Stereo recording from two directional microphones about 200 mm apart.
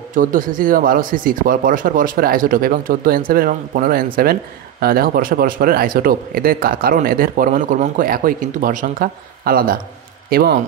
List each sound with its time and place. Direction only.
0.1 s speech: 40° right (ahead or behind)